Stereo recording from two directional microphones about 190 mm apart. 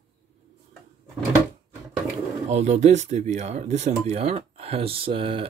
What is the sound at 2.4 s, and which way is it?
Speech, 35° right (ahead or behind).